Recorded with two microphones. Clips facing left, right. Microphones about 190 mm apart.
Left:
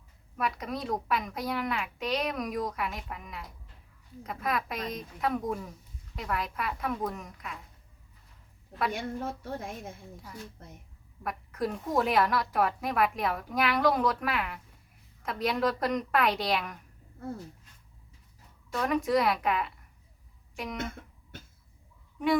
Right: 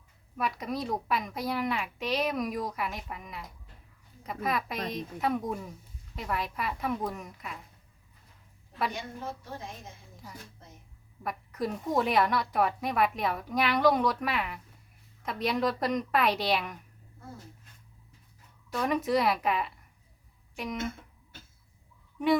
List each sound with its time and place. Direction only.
0.3 s a woman's voice: centre (ahead or behind)
8.9 s a woman's voice: 60° left (ahead or behind)
11.2 s a woman's voice: centre (ahead or behind)
18.7 s a woman's voice: centre (ahead or behind)